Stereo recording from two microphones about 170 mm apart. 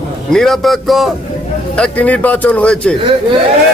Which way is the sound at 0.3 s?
Centre (ahead or behind).